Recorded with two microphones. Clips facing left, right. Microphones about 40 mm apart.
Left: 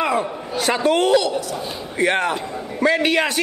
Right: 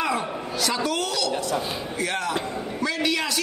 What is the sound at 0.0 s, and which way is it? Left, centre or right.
A woman's voice, left.